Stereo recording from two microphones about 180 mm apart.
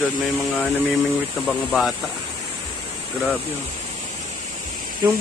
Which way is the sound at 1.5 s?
Centre (ahead or behind).